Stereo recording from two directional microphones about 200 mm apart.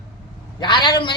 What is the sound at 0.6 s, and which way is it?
Speech, 20° left (ahead or behind).